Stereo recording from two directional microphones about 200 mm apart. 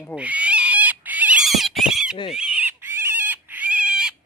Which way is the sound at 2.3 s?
5° right (ahead or behind).